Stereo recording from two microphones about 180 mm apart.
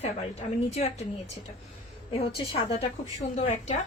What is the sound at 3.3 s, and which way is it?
Speech, 40° left (ahead or behind).